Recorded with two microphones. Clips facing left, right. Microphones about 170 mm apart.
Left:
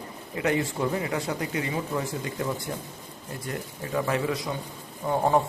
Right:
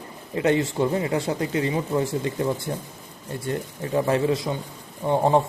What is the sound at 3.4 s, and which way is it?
A man's voice, 30° right (ahead or behind).